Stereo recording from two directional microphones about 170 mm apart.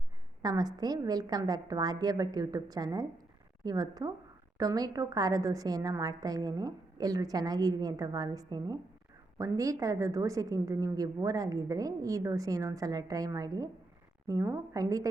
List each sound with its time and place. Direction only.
0.4 s a woman's voice: 20° right (ahead or behind)